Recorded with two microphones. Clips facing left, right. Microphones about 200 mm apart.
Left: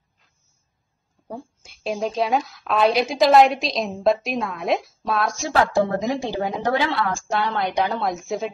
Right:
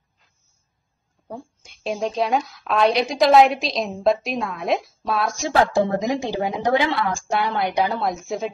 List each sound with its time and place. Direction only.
1.2 s a woman's voice: centre (ahead or behind)
5.4 s a woman's voice: 15° right (ahead or behind); by 8.5 s centre (ahead or behind)